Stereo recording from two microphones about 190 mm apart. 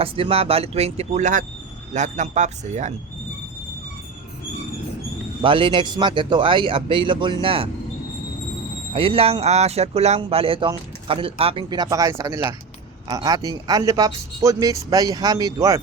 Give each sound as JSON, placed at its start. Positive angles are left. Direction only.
{"t": 0.0, "sound": "speech", "side_deg": -30}
{"t": 5.4, "sound": "speech", "side_deg": -25}
{"t": 9.0, "sound": "speech", "side_deg": -30}